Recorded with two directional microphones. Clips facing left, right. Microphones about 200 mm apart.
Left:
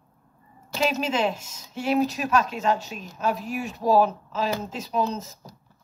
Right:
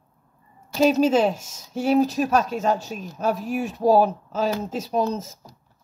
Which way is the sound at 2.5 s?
45° right (ahead or behind).